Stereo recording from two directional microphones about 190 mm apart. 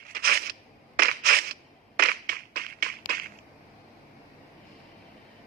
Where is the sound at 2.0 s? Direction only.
50° right (ahead or behind).